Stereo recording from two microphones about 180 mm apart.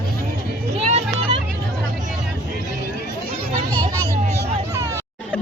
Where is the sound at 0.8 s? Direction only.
35° right (ahead or behind).